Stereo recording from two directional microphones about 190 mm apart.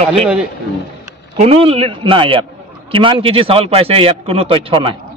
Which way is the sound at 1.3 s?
35° right (ahead or behind).